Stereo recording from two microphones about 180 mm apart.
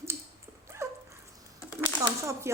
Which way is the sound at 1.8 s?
15° right (ahead or behind).